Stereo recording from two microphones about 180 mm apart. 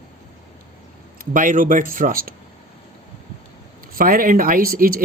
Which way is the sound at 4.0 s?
50° right (ahead or behind).